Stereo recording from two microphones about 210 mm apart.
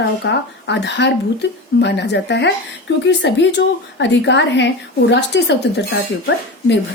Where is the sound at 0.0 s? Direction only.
55° left (ahead or behind).